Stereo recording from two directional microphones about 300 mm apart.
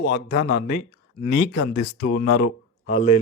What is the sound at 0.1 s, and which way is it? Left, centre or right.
Speech, left.